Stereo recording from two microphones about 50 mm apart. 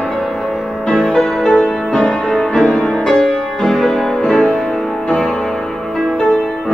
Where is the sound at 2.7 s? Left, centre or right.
Centre.